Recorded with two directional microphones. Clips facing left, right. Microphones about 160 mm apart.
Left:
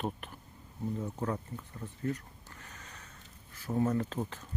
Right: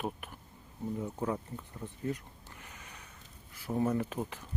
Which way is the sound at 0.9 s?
10° right (ahead or behind).